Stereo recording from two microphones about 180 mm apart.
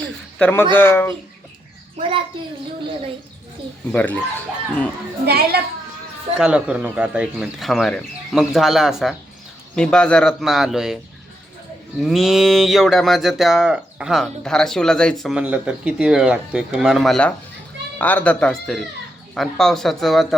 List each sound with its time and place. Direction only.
0.0 s a man's voice: 5° left (ahead or behind)
2.0 s a child's voice: 30° right (ahead or behind)
3.9 s speech: 10° left (ahead or behind)
5.2 s a child's voice: 60° right (ahead or behind)
6.4 s speech: 5° right (ahead or behind)
11.9 s speech: centre (ahead or behind)